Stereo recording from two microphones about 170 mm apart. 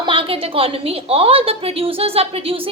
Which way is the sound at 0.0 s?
30° right (ahead or behind).